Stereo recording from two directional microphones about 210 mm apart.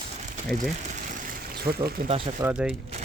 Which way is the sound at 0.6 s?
40° right (ahead or behind).